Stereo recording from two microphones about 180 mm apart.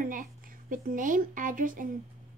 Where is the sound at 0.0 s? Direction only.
50° right (ahead or behind).